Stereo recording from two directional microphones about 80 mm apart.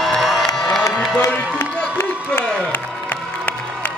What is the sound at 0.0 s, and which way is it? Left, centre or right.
Crowd, centre.